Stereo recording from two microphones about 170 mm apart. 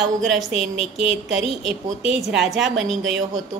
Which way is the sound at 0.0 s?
Centre (ahead or behind).